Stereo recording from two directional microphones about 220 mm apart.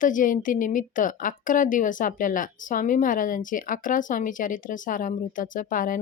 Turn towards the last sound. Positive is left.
turn(degrees=40)  # may be behind; listen again after turning